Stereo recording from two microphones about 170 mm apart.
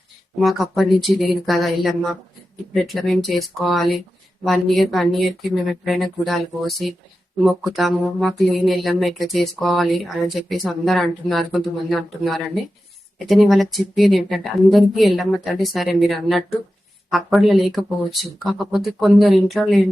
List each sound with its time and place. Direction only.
0.3 s speech: centre (ahead or behind)